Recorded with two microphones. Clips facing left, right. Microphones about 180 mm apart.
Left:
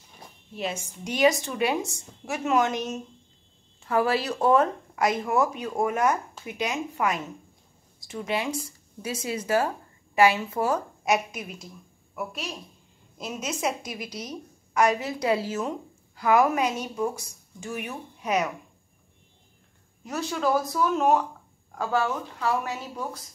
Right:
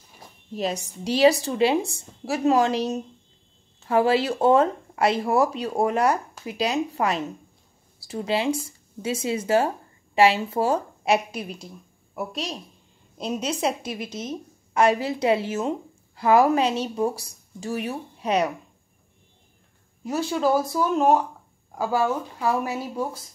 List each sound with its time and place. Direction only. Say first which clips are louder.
0.6 s a woman's voice: right 4 dB; 40° right (ahead or behind)
20.1 s speech: right 4 dB; 30° right (ahead or behind)
21.7 s speech: right 3 dB; 15° right (ahead or behind)
22.6 s a woman's voice: right 5 dB; 30° right (ahead or behind)